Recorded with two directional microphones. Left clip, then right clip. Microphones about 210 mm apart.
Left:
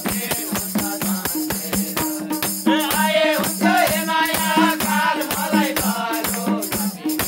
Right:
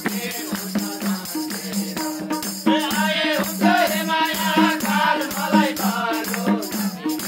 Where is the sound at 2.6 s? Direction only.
50° left (ahead or behind).